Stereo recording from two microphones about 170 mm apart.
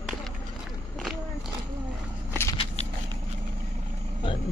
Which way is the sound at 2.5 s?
40° left (ahead or behind).